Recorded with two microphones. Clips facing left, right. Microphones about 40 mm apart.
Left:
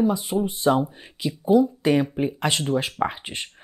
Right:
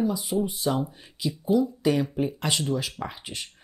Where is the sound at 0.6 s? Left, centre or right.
Left.